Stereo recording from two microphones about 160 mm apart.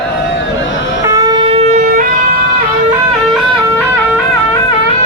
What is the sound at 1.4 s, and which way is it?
Shofar, 40° right (ahead or behind).